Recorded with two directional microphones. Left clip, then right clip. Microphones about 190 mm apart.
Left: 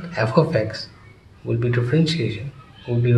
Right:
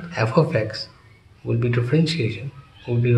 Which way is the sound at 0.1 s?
20° right (ahead or behind).